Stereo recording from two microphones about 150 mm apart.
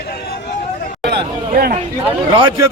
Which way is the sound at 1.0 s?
90° right.